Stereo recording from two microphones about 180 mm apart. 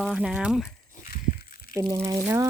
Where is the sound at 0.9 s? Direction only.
55° left (ahead or behind).